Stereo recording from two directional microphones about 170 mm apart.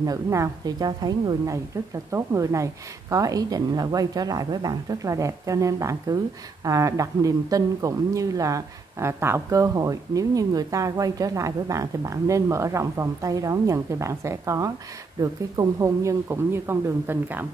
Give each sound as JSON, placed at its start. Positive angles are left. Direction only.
{"t": 0.0, "sound": "speech", "side_deg": -20}